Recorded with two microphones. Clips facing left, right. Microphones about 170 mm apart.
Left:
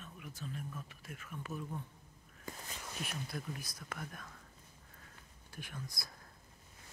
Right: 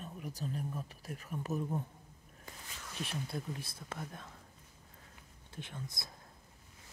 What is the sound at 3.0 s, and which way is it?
Speech, 30° right (ahead or behind).